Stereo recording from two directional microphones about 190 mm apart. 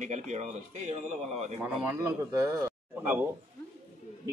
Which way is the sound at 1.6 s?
10° right (ahead or behind).